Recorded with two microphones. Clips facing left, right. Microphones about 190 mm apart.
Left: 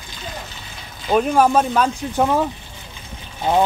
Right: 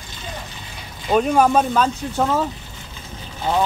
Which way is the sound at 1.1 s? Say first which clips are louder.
Even; 5° left (ahead or behind).